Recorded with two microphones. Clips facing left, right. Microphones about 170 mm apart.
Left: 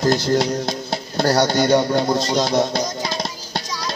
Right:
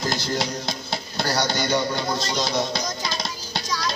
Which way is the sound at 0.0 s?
50° left (ahead or behind).